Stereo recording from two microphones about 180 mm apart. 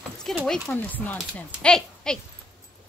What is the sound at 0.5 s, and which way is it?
Speech, 5° left (ahead or behind).